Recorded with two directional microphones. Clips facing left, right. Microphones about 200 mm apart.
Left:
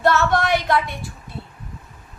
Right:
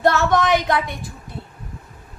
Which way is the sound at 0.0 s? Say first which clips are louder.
Right 1 dB; 15° right (ahead or behind).